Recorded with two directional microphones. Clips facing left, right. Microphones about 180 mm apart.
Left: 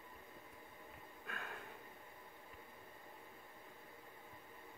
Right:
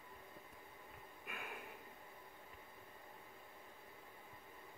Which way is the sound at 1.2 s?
10° right (ahead or behind).